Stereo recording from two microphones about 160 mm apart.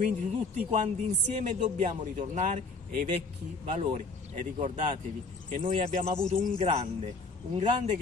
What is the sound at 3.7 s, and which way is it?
Speech, 45° right (ahead or behind).